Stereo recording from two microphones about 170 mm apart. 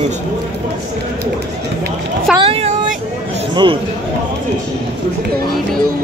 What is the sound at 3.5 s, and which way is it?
Speech, 30° right (ahead or behind).